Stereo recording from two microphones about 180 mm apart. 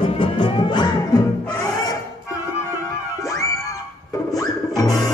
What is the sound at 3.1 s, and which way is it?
Music, 15° left (ahead or behind).